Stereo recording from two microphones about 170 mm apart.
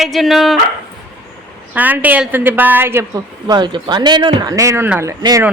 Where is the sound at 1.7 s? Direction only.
10° right (ahead or behind).